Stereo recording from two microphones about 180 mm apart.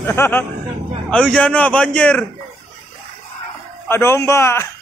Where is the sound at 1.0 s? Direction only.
5° left (ahead or behind).